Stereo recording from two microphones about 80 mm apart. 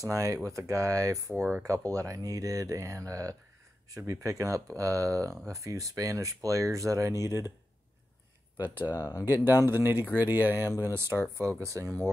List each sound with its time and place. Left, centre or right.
0.0 s speech: right
1.3 s speech: right
1.9 s speech: right
8.5 s speech: right
8.9 s speech: left
9.2 s speech: right